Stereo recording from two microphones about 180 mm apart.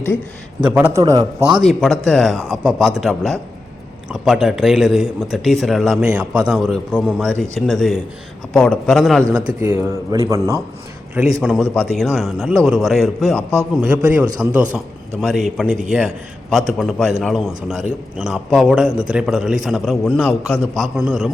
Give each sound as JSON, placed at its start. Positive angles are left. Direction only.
{"t": 0.6, "sound": "speech", "side_deg": -10}
{"t": 1.6, "sound": "speech", "side_deg": 0}
{"t": 9.3, "sound": "speech", "side_deg": -10}
{"t": 11.4, "sound": "speech", "side_deg": 5}
{"t": 13.5, "sound": "speech", "side_deg": -10}